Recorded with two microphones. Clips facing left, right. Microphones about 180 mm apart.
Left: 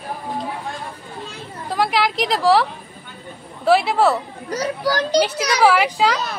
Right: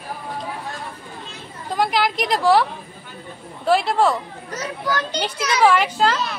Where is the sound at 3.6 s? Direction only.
5° left (ahead or behind).